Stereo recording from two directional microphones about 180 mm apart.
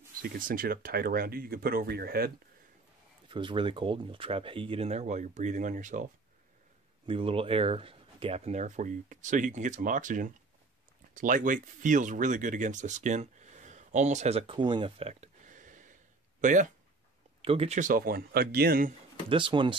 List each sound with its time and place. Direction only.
0.2 s speech: 50° right (ahead or behind)
3.3 s speech: 25° right (ahead or behind); by 6.0 s 45° right (ahead or behind)
7.1 s speech: 30° right (ahead or behind); by 16.7 s 45° right (ahead or behind)
17.4 s speech: 30° right (ahead or behind); by 18.9 s 55° right (ahead or behind)
19.2 s speech: 30° right (ahead or behind)